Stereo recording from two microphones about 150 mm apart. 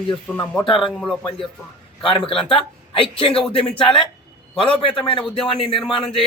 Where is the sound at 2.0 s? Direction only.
35° left (ahead or behind).